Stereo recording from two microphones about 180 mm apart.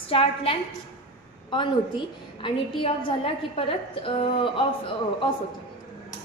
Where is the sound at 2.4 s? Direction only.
30° left (ahead or behind).